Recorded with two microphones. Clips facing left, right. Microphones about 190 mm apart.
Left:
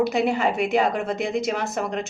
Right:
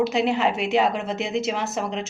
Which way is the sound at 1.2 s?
50° left (ahead or behind).